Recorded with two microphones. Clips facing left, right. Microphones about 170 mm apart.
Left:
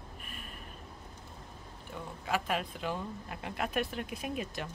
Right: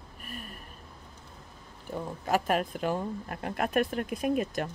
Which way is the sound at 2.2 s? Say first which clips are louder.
Right 6 dB; 45° right (ahead or behind).